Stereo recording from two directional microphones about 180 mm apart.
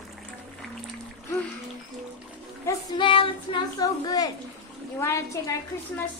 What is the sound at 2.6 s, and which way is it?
A child's voice, 25° left (ahead or behind).